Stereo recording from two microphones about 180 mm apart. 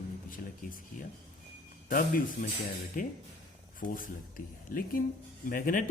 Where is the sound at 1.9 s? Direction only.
50° left (ahead or behind).